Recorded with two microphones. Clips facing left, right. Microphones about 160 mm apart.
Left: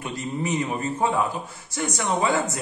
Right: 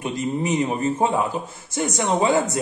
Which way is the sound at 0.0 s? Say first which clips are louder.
Right 4 dB; 20° right (ahead or behind).